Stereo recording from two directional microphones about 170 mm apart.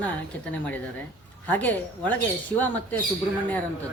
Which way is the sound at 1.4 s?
10° left (ahead or behind).